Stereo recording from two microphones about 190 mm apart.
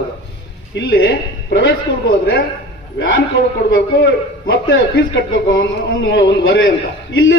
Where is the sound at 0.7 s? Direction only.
70° left (ahead or behind).